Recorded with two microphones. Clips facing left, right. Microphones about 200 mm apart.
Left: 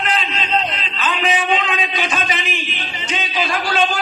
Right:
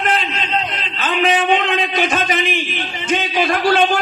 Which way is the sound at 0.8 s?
50° right (ahead or behind).